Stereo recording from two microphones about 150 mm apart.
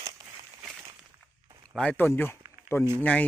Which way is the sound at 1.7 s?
5° left (ahead or behind).